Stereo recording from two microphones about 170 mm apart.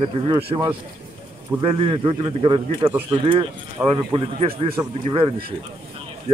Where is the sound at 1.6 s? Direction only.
30° right (ahead or behind).